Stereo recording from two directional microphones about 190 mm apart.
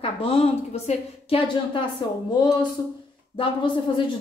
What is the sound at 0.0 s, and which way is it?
A woman's voice, 30° left (ahead or behind).